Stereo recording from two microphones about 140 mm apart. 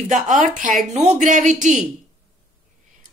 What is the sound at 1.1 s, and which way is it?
Speech, 60° right (ahead or behind).